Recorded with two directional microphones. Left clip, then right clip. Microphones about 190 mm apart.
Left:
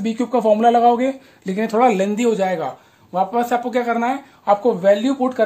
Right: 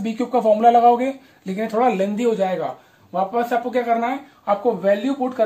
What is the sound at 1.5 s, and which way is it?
Speech, 50° left (ahead or behind).